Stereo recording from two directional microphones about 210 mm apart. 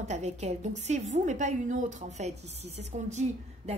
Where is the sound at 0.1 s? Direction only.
30° right (ahead or behind).